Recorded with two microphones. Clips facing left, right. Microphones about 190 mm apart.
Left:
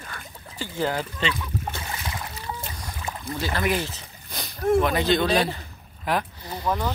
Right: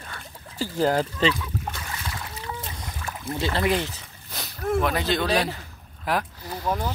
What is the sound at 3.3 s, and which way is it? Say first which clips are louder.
Speech: right 2 dB; 25° right (ahead or behind).